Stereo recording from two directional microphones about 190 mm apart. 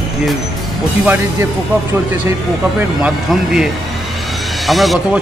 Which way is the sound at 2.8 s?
5° right (ahead or behind).